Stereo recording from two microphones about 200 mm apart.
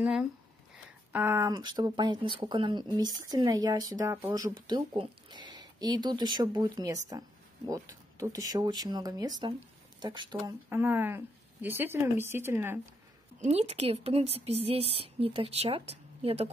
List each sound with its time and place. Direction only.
0.0 s speech: 5° right (ahead or behind); by 10.5 s 25° right (ahead or behind)
10.7 s speech: 10° right (ahead or behind)
13.4 s speech: 30° right (ahead or behind)